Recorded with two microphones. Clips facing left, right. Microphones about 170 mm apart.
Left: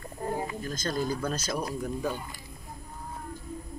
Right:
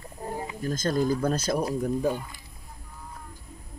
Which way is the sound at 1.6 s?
35° right (ahead or behind).